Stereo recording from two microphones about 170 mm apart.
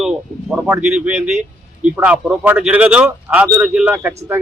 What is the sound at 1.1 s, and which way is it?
Speech, 45° right (ahead or behind).